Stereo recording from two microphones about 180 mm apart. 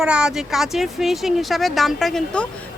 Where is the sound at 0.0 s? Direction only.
5° right (ahead or behind).